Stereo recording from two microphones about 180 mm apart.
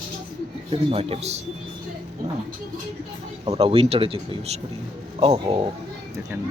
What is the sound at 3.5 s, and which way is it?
Speech, 30° right (ahead or behind).